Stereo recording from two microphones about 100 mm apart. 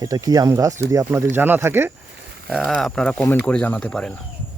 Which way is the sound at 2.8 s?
5° left (ahead or behind).